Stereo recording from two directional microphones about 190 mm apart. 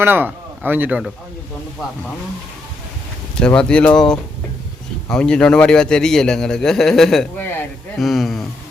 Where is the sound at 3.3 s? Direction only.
5° left (ahead or behind).